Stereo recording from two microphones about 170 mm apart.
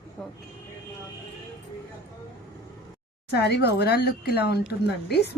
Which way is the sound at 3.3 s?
75° left (ahead or behind).